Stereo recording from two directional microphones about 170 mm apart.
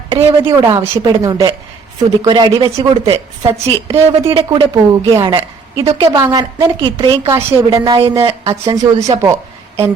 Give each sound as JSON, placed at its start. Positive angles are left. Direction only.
{"t": 0.1, "sound": "a woman's voice", "side_deg": -30}
{"t": 6.1, "sound": "a woman's voice", "side_deg": -20}
{"t": 8.2, "sound": "speech", "side_deg": -35}
{"t": 8.6, "sound": "a woman's voice", "side_deg": -20}